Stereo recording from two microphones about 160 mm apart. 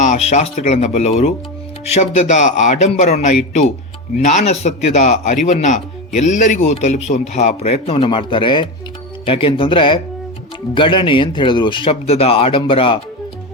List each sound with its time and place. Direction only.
0.0 s a man's voice: 45° left (ahead or behind)